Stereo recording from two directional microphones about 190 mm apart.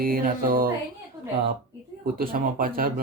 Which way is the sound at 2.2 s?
50° right (ahead or behind).